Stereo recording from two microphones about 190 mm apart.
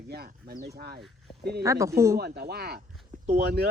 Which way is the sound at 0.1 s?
55° right (ahead or behind).